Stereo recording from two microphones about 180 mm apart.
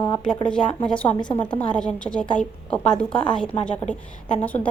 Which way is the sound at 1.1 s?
25° left (ahead or behind).